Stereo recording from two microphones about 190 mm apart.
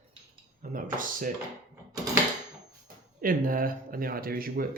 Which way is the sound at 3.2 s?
45° right (ahead or behind).